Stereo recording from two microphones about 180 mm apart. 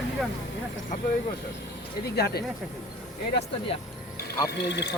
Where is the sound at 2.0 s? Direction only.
60° left (ahead or behind).